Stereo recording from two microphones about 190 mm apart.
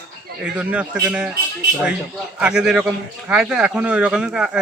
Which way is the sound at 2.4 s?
5° right (ahead or behind).